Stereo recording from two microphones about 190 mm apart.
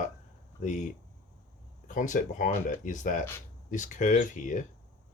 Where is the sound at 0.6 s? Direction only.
35° left (ahead or behind).